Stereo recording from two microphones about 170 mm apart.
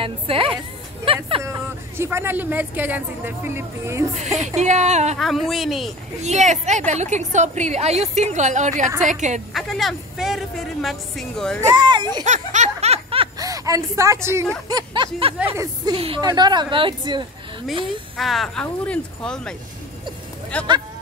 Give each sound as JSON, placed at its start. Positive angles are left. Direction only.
{"t": 0.0, "sound": "speech", "side_deg": -30}
{"t": 1.0, "sound": "music", "side_deg": -30}
{"t": 1.4, "sound": "speech", "side_deg": -15}
{"t": 4.6, "sound": "a woman's voice", "side_deg": -45}
{"t": 5.2, "sound": "speech", "side_deg": 0}
{"t": 6.2, "sound": "a woman's voice", "side_deg": -45}
{"t": 9.5, "sound": "speech", "side_deg": 0}
{"t": 11.6, "sound": "speech", "side_deg": -25}
{"t": 12.3, "sound": "snicker", "side_deg": -45}
{"t": 13.4, "sound": "a woman's voice", "side_deg": -20}
{"t": 14.7, "sound": "speech", "side_deg": -25}
{"t": 18.1, "sound": "speech", "side_deg": 0}
{"t": 20.5, "sound": "speech", "side_deg": 10}